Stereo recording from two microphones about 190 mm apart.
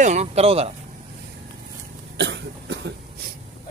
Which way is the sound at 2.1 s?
65° right (ahead or behind).